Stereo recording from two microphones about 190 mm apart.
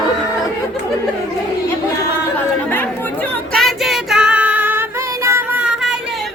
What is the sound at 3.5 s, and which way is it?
Child singing, centre (ahead or behind).